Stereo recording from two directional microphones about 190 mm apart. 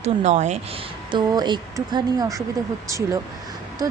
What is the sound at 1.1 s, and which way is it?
A woman's voice, 25° right (ahead or behind).